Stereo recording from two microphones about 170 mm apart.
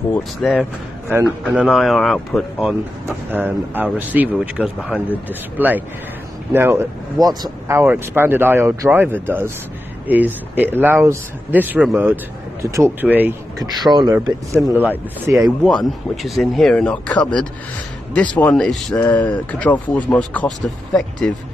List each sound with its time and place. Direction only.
0.1 s speech: centre (ahead or behind)
3.3 s speech: 10° right (ahead or behind)
13.8 s speech: 25° right (ahead or behind)
14.7 s speech: 10° right (ahead or behind)